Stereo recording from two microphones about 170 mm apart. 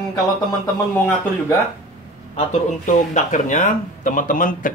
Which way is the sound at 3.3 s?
45° left (ahead or behind).